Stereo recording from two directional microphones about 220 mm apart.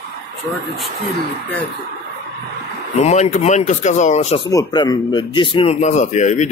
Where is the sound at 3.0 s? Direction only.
30° left (ahead or behind).